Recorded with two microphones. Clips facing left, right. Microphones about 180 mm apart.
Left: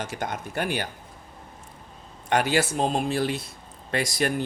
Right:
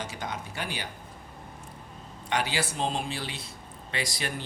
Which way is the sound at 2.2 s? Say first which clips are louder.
Left 7 dB; 50° left (ahead or behind).